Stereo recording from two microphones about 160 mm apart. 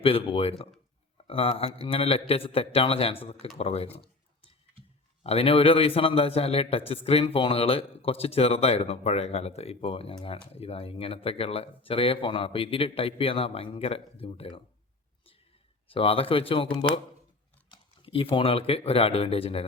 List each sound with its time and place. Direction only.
0.0 s a man's voice: 35° left (ahead or behind)
5.2 s a man's voice: 40° left (ahead or behind)
15.9 s a man's voice: 35° left (ahead or behind)
17.7 s speech: 35° left (ahead or behind)